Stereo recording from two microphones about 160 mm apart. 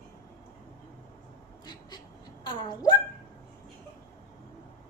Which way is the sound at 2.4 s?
25° left (ahead or behind).